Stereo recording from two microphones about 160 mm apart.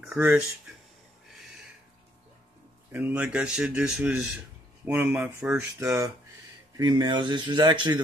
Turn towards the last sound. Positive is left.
turn(degrees=-30)  # may be behind; listen again after turning